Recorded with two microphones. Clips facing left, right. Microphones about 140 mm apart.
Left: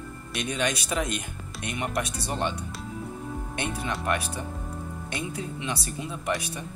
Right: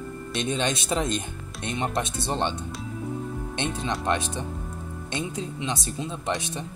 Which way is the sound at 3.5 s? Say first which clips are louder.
Right 2 dB; 25° right (ahead or behind).